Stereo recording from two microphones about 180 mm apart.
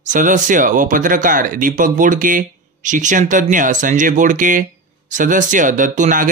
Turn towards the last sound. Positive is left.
turn(degrees=-45)  # may be behind; listen again after turning